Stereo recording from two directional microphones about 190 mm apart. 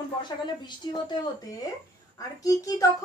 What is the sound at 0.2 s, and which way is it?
A woman's voice, 25° left (ahead or behind).